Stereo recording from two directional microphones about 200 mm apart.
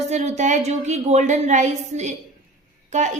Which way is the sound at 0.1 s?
35° right (ahead or behind).